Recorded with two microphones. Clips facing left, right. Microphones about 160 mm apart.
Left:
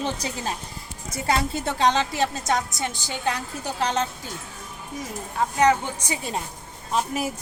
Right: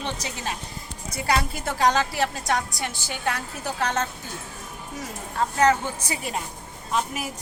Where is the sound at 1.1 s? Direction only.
25° left (ahead or behind).